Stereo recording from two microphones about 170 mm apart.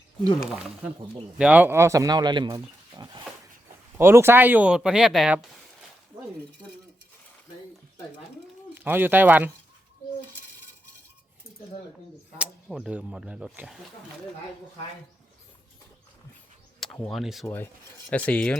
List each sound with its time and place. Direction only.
1.4 s speech: 10° right (ahead or behind)
8.7 s speech: 10° right (ahead or behind)
12.4 s speech: 5° right (ahead or behind)
16.8 s speech: 5° left (ahead or behind)
17.4 s speech: 15° left (ahead or behind)